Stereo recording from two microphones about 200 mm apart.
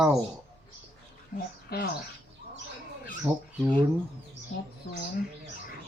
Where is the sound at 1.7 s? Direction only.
50° left (ahead or behind).